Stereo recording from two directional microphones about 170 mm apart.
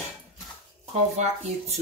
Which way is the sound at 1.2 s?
40° right (ahead or behind).